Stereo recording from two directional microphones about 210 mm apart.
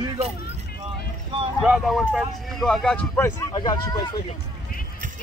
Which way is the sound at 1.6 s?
Centre (ahead or behind).